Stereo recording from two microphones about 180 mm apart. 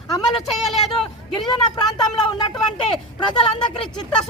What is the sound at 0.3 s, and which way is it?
Speech, centre (ahead or behind).